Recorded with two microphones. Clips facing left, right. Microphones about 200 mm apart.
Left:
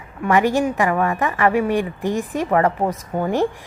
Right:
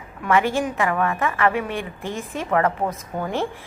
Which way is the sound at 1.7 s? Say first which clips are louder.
Left 8 dB; 15° left (ahead or behind).